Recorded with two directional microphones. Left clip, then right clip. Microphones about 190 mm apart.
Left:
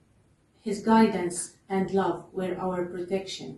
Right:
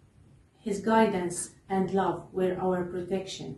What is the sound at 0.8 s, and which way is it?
A woman's voice, centre (ahead or behind).